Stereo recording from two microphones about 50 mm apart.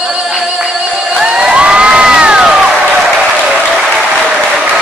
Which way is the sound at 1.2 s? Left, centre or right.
Centre.